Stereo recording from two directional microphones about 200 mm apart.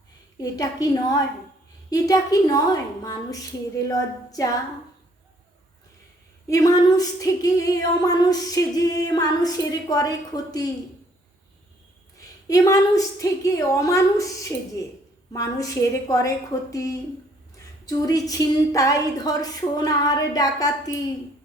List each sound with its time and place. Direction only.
0.3 s a woman's voice: 20° left (ahead or behind)
1.9 s a woman's voice: 15° left (ahead or behind)
6.5 s a sound: 20° left (ahead or behind)
12.5 s a woman's voice: 20° left (ahead or behind)
17.8 s a woman's voice: 20° left (ahead or behind)